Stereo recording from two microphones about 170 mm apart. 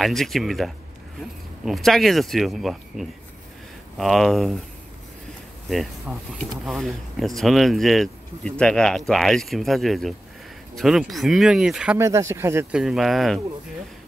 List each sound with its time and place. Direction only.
0.0 s speech: centre (ahead or behind)
5.7 s speech: centre (ahead or behind)
12.0 s speech: 15° right (ahead or behind)
12.7 s speech: centre (ahead or behind)